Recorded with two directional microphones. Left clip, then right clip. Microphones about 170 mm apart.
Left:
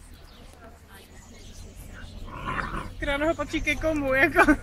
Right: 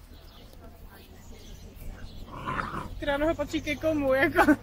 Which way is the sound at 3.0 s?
35° right (ahead or behind).